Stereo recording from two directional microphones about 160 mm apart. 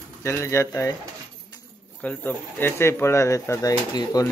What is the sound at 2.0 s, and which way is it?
Speech, 10° left (ahead or behind).